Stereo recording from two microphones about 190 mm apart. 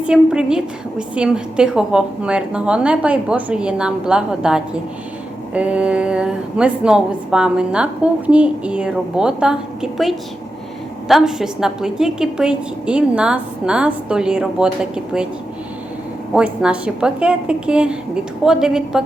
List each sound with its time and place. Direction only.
0.0 s a woman's voice: 5° right (ahead or behind)
16.3 s a woman's voice: 5° right (ahead or behind)